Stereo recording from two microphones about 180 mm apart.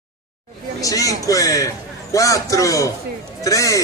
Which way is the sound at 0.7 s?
20° left (ahead or behind).